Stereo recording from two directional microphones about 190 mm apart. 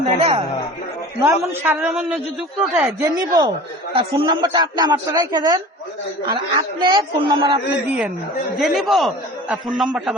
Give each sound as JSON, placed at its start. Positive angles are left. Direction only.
{"t": 0.2, "sound": "speech", "side_deg": -30}
{"t": 1.2, "sound": "a man's voice", "side_deg": -10}
{"t": 2.7, "sound": "a man's voice", "side_deg": -10}
{"t": 7.9, "sound": "a man's voice", "side_deg": -5}